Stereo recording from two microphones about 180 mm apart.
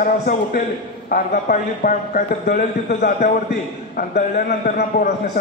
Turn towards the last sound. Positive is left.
turn(degrees=55)  # may be behind; listen again after turning